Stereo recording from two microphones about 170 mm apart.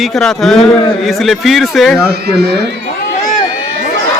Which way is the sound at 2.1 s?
75° right (ahead or behind).